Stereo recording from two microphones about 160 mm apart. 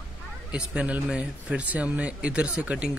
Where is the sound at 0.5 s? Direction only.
10° right (ahead or behind).